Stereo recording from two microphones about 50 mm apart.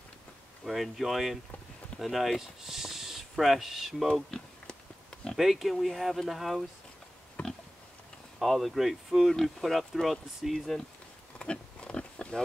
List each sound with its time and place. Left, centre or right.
0.7 s speech: centre
4.1 s a sound: centre
5.3 s speech: centre
7.4 s pig: left
8.4 s speech: centre
11.3 s pig: centre